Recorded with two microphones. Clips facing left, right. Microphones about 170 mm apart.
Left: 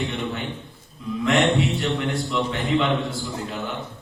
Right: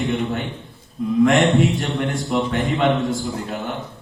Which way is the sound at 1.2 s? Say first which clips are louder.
Right 5 dB; 50° right (ahead or behind).